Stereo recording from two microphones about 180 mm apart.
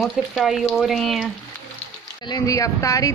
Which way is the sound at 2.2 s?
20° left (ahead or behind).